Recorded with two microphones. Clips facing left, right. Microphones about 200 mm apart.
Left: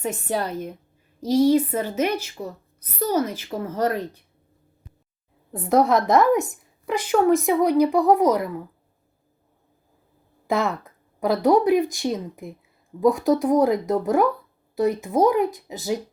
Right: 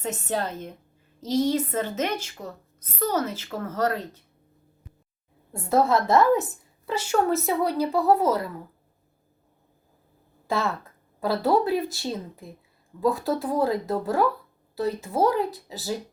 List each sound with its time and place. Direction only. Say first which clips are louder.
0.0 s a woman's voice: left 2 dB; 10° left (ahead or behind)
5.5 s a woman's voice: left 3 dB; 15° left (ahead or behind)
10.4 s a woman's voice: left 4 dB; 15° left (ahead or behind)